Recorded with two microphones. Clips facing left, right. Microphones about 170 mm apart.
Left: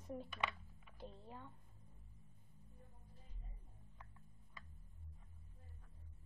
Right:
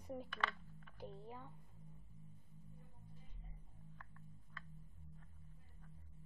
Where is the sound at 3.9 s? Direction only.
15° left (ahead or behind).